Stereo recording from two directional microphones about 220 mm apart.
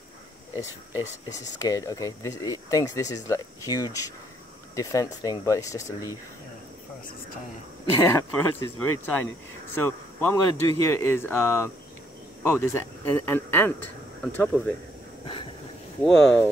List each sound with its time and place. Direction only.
1.6 s speech: 15° left (ahead or behind)
7.9 s speech: 15° left (ahead or behind)
16.0 s speech: centre (ahead or behind)